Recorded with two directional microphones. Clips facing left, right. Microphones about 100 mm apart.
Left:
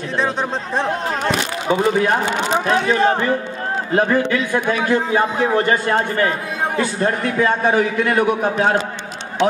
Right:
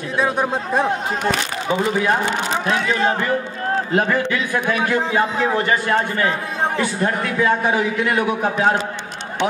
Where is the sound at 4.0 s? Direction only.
30° left (ahead or behind).